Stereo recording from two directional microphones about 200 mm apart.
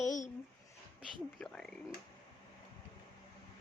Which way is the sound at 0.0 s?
40° left (ahead or behind).